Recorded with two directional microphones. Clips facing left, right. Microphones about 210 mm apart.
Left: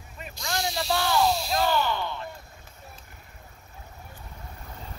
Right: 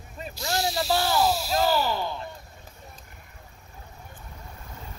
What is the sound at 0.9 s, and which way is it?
Speech, 40° right (ahead or behind).